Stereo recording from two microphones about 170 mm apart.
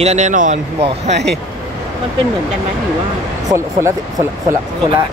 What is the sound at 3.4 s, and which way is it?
Speech, 15° right (ahead or behind).